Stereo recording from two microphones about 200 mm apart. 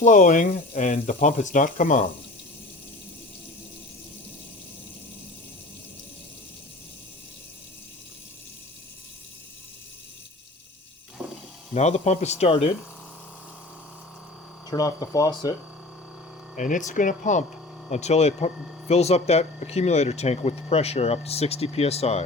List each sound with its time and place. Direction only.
0.0 s speech: 40° left (ahead or behind)
11.7 s speech: 35° left (ahead or behind)
14.7 s speech: 15° left (ahead or behind)
16.6 s speech: 40° left (ahead or behind)